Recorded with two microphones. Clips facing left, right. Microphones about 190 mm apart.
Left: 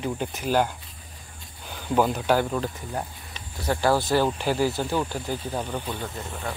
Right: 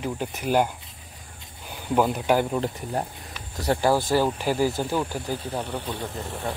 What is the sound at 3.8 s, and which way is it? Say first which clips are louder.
Speech: even; 10° right (ahead or behind).